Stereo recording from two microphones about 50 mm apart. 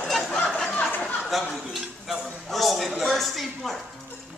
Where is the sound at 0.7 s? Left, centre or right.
Left.